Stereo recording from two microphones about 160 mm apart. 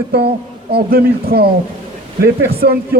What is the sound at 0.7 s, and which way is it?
Speech, 75° right (ahead or behind).